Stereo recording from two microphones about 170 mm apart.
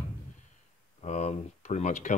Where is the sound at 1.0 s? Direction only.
40° left (ahead or behind).